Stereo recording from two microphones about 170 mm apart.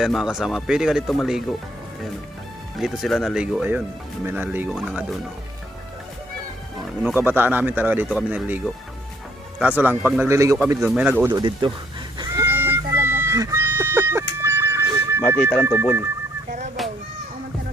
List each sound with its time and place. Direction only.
0.0 s speech: centre (ahead or behind)
2.7 s speech: centre (ahead or behind)
7.0 s speech: 10° right (ahead or behind)
11.3 s speech: 25° right (ahead or behind)
12.2 s goose: 20° right (ahead or behind)
13.0 s music: 15° right (ahead or behind)
15.6 s speech: 15° right (ahead or behind)
16.5 s a sound: 45° right (ahead or behind)